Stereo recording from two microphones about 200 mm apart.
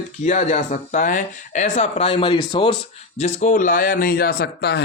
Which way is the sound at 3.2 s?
35° left (ahead or behind).